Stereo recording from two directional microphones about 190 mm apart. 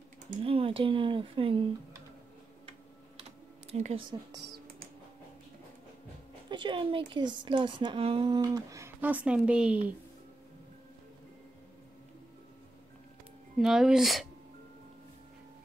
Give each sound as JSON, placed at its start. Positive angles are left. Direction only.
{"t": 0.4, "sound": "speech", "side_deg": -30}
{"t": 3.7, "sound": "speech", "side_deg": -35}
{"t": 6.5, "sound": "speech", "side_deg": -25}
{"t": 13.6, "sound": "speech", "side_deg": 0}